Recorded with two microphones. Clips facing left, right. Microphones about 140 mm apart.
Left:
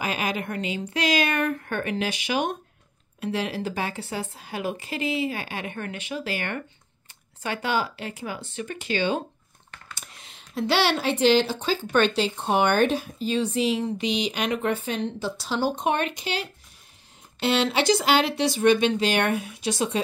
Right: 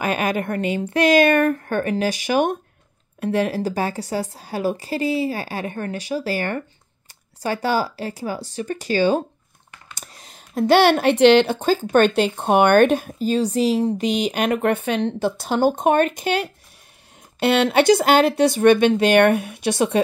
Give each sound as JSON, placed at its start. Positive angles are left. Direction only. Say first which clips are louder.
{"t": 0.0, "sound": "a woman's voice", "louder": "right 6 dB", "side_deg": -50}